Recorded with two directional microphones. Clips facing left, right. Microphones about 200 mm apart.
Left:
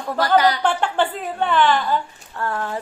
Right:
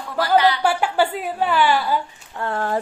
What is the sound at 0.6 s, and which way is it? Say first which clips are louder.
A woman's voice: right 1 dB; 10° right (ahead or behind).